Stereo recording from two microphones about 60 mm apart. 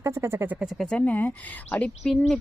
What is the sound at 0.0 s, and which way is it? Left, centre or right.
Speech, right.